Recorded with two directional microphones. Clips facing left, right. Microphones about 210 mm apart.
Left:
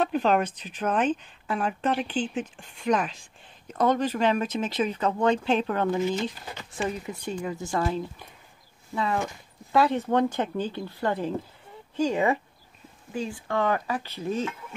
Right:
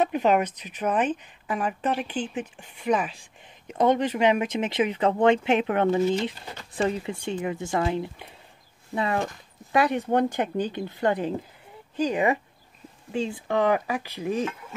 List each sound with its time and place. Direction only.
0.1 s speech: 10° right (ahead or behind)
3.6 s speech: 20° right (ahead or behind)